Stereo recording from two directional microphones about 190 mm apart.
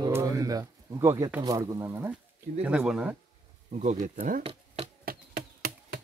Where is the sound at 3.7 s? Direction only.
40° right (ahead or behind).